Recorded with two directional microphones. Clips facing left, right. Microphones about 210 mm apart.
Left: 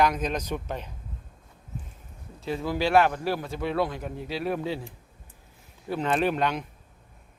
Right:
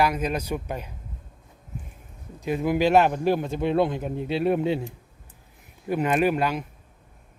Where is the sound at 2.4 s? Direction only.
15° right (ahead or behind).